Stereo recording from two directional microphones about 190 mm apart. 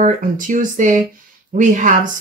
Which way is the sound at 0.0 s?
40° right (ahead or behind).